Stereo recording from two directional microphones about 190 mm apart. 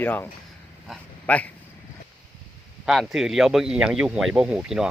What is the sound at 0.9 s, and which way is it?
Dog, 5° left (ahead or behind).